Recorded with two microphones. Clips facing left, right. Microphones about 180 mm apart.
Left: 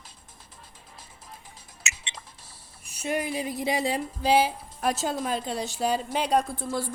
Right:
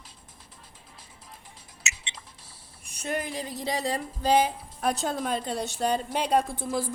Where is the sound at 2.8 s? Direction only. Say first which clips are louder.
Left 3 dB; 10° left (ahead or behind).